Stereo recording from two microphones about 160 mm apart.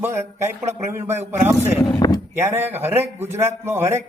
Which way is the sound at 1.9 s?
25° left (ahead or behind).